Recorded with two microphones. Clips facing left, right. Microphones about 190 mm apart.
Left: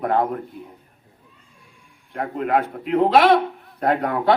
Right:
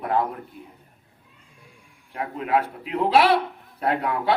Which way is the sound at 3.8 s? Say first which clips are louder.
Left 3 dB; 50° left (ahead or behind).